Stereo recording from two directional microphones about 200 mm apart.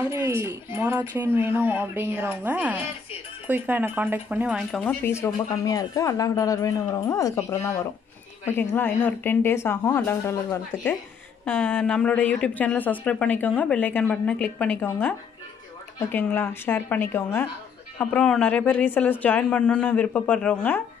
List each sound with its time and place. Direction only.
0.0 s speech: 10° right (ahead or behind)
4.7 s speech: 10° left (ahead or behind)